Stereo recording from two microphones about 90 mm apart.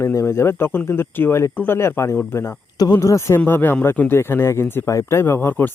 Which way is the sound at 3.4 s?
20° left (ahead or behind).